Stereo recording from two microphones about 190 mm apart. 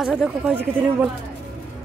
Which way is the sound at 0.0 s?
5° right (ahead or behind).